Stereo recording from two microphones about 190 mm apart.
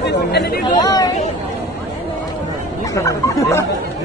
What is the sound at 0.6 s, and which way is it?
Speech, 20° left (ahead or behind).